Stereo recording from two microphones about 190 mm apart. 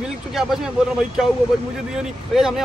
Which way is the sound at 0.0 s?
Centre (ahead or behind).